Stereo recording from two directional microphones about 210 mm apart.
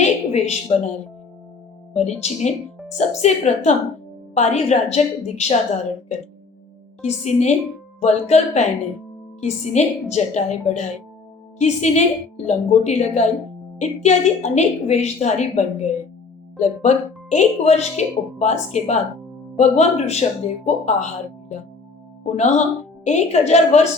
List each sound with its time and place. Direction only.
0.0 s a woman's voice: 30° left (ahead or behind)
7.0 s a woman's voice: 30° left (ahead or behind)
22.2 s a woman's voice: 35° left (ahead or behind)